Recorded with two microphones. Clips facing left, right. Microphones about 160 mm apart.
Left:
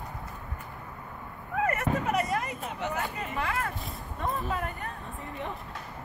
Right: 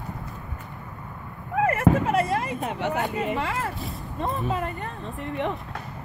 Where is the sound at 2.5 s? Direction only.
80° right.